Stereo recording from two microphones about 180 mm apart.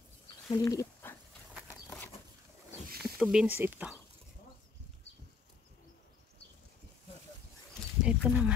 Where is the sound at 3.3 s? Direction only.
10° right (ahead or behind).